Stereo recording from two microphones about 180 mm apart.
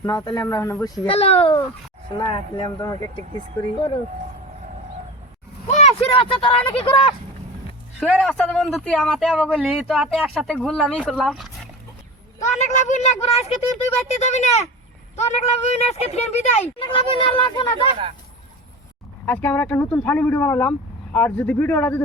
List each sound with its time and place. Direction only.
0.0 s speech: 20° left (ahead or behind)
1.0 s speech: 35° left (ahead or behind)
5.6 s speech: 40° left (ahead or behind)
7.9 s speech: centre (ahead or behind)
12.5 s speech: 40° left (ahead or behind)
19.2 s speech: 10° left (ahead or behind)